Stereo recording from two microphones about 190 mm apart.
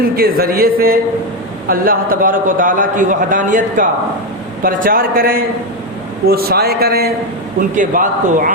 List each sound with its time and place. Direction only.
0.0 s a man's voice: 50° right (ahead or behind)
7.8 s a man's voice: 45° right (ahead or behind)